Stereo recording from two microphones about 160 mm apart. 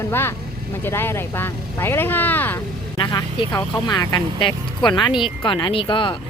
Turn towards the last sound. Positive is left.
turn(degrees=30)  # may be behind; listen again after turning